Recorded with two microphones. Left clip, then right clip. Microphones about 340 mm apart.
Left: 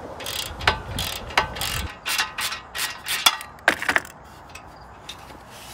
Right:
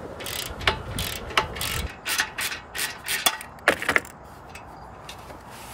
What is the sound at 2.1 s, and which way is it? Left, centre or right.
Mechanisms, centre.